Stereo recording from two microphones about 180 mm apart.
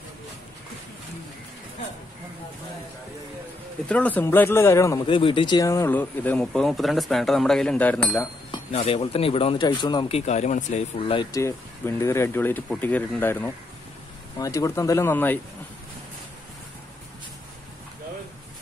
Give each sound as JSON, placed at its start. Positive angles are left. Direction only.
{"t": 3.9, "sound": "speech", "side_deg": 10}
{"t": 5.0, "sound": "speech", "side_deg": 30}
{"t": 8.5, "sound": "speech", "side_deg": 30}
{"t": 11.3, "sound": "speech", "side_deg": 15}